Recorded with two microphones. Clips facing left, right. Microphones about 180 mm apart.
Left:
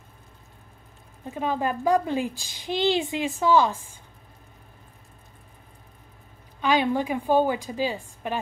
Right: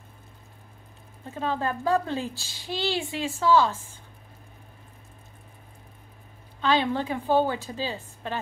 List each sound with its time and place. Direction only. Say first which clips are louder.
1.2 s a woman's voice: left 2 dB; 15° left (ahead or behind)
6.6 s a woman's voice: left 2 dB; 15° left (ahead or behind)